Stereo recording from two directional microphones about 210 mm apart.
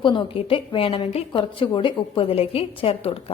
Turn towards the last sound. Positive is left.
turn(degrees=25)  # may be behind; listen again after turning